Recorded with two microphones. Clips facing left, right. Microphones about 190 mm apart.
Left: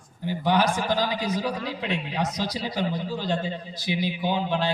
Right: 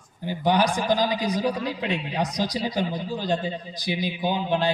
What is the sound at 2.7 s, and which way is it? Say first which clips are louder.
A man's voice: right 1 dB; 15° right (ahead or behind).